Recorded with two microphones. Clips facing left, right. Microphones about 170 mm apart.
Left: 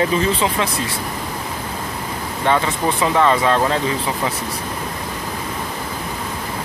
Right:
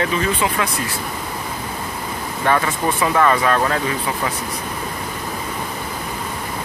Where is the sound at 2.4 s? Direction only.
20° left (ahead or behind).